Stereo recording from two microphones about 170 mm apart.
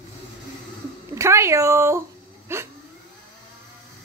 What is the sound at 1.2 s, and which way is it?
Speech, 15° right (ahead or behind).